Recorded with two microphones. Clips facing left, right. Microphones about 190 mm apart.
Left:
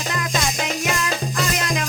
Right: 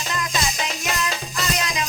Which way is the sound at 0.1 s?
55° left (ahead or behind).